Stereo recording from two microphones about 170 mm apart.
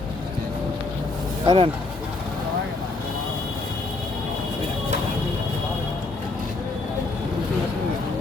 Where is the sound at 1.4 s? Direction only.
30° right (ahead or behind).